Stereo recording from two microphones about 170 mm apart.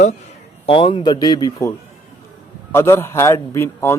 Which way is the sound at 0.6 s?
30° left (ahead or behind).